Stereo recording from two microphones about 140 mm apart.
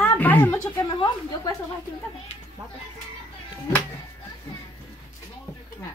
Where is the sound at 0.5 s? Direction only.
25° left (ahead or behind).